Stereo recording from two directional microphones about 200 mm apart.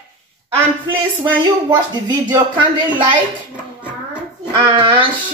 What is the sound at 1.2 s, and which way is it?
Speech, 20° right (ahead or behind).